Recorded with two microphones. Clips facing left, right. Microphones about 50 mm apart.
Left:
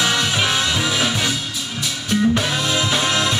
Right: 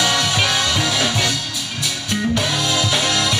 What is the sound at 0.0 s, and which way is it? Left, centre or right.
Music, centre.